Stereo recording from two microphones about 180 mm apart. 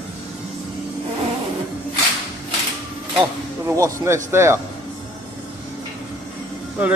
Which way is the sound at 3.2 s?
15° right (ahead or behind).